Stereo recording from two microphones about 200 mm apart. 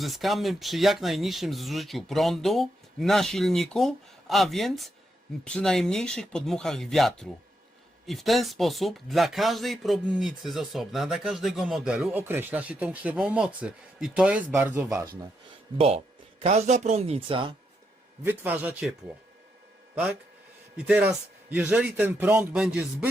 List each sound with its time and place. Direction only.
0.0 s speech: centre (ahead or behind); by 15.1 s 20° right (ahead or behind)
16.4 s speech: 30° right (ahead or behind)
18.2 s speech: 10° right (ahead or behind)
20.7 s speech: 5° right (ahead or behind)